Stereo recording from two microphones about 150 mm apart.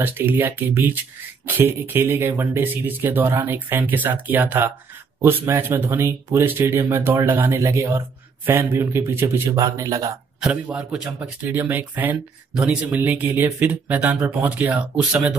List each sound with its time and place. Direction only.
0.0 s speech: 15° right (ahead or behind)
10.4 s speech: 5° right (ahead or behind)